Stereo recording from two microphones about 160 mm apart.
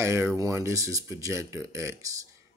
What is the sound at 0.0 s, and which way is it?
Speech, 15° right (ahead or behind).